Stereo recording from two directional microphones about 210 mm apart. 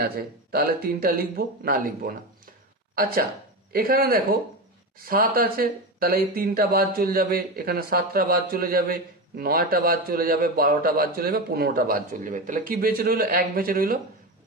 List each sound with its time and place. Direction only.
0.0 s speech: 45° right (ahead or behind)